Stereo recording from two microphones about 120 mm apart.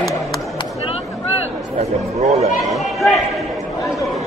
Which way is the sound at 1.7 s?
65° right (ahead or behind).